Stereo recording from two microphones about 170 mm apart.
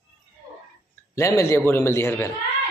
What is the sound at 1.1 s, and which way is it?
A man's voice, 15° left (ahead or behind).